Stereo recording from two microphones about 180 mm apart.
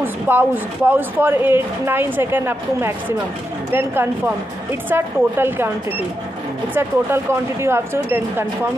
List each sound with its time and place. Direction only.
0.0 s speech: 10° right (ahead or behind)
6.7 s speech: 15° right (ahead or behind)